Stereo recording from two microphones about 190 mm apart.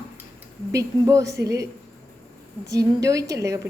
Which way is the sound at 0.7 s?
15° right (ahead or behind).